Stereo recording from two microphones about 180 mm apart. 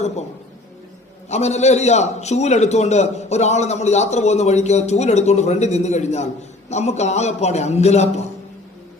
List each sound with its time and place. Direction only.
1.3 s a man's voice: 40° left (ahead or behind)